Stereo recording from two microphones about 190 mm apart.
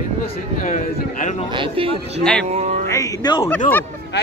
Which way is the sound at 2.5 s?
40° right (ahead or behind).